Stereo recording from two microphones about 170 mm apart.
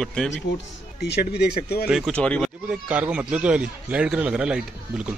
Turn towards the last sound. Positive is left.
turn(degrees=-5)  # may be behind; listen again after turning